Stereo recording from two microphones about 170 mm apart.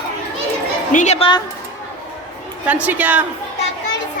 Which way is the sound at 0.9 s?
45° left (ahead or behind).